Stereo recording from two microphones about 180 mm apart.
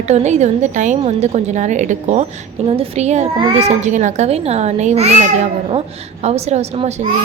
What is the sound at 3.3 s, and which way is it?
Speech, 25° right (ahead or behind).